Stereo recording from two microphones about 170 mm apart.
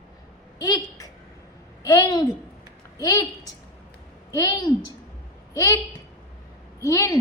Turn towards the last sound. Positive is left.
turn(degrees=20)  # may be behind; listen again after turning